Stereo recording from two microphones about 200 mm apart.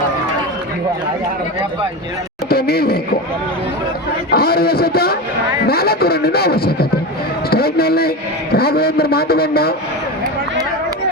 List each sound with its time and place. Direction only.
2.5 s speech: 50° left (ahead or behind)
4.3 s a man's voice: 50° left (ahead or behind)